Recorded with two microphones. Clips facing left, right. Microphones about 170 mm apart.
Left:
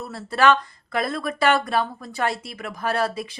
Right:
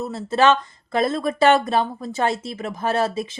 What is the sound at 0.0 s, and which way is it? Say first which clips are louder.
Speech: right 2 dB; 20° right (ahead or behind).